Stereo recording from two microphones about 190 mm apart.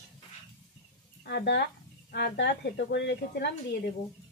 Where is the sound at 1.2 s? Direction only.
65° left (ahead or behind).